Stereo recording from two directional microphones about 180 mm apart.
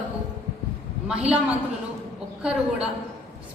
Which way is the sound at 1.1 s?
5° right (ahead or behind).